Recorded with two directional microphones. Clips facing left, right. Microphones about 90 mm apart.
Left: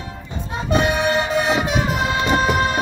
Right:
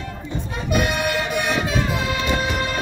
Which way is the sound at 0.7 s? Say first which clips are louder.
Left 3 dB; 30° left (ahead or behind).